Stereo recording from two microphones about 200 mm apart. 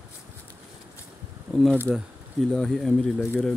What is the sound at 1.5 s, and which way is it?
Speech, centre (ahead or behind).